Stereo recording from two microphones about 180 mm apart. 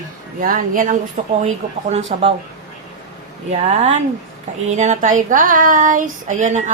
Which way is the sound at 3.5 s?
40° right (ahead or behind).